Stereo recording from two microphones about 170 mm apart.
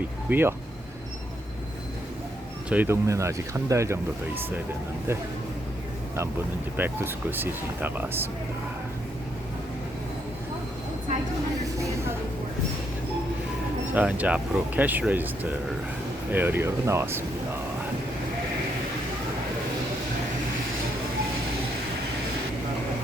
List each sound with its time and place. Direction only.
0.3 s speech: 10° right (ahead or behind)
2.6 s speech: 10° right (ahead or behind)
6.7 s speech: 10° right (ahead or behind)
11.6 s vehicle: 20° right (ahead or behind)
13.9 s speech: 10° right (ahead or behind)